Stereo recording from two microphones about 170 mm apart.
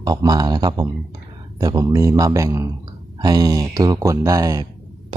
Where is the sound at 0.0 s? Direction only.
20° right (ahead or behind).